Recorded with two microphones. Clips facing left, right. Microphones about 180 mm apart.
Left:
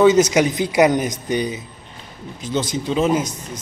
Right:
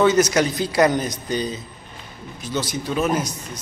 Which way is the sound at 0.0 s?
15° left (ahead or behind).